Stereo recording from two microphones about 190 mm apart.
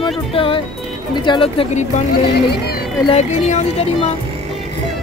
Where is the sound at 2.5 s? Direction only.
55° left (ahead or behind).